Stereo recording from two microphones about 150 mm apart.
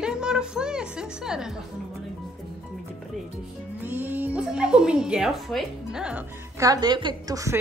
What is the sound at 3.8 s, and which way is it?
Speech, 15° right (ahead or behind).